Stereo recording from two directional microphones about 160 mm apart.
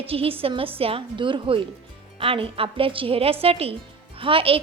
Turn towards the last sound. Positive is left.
turn(degrees=-35)  # may be behind; listen again after turning